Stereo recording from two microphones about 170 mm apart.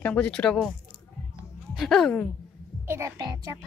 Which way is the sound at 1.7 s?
Centre (ahead or behind).